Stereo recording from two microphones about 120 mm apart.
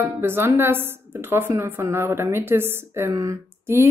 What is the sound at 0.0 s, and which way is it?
A woman's voice, 20° right (ahead or behind).